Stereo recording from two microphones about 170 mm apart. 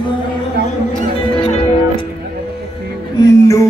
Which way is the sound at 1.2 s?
30° left (ahead or behind).